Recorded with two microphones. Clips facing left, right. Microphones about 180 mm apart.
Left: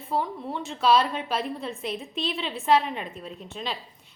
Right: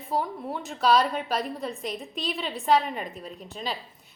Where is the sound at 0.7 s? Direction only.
Centre (ahead or behind).